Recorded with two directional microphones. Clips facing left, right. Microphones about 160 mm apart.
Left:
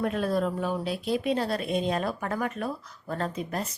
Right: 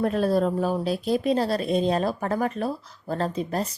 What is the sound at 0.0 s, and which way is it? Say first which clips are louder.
Speech: right 5 dB; 35° right (ahead or behind).